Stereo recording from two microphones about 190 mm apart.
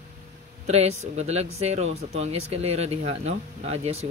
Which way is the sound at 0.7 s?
35° right (ahead or behind).